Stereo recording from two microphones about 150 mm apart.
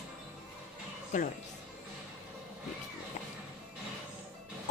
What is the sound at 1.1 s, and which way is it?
Speech, 55° left (ahead or behind).